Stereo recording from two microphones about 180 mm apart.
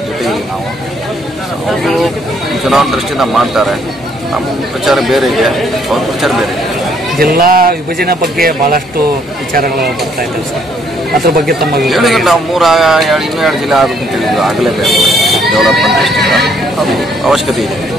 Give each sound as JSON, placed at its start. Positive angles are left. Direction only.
{"t": 1.7, "sound": "vehicle", "side_deg": 0}
{"t": 2.6, "sound": "speech", "side_deg": 0}
{"t": 4.8, "sound": "speech", "side_deg": 0}
{"t": 7.2, "sound": "speech", "side_deg": -55}
{"t": 11.2, "sound": "speech", "side_deg": -60}
{"t": 11.8, "sound": "speech", "side_deg": 0}